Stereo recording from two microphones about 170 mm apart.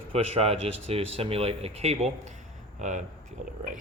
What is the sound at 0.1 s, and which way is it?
Speech, 35° right (ahead or behind).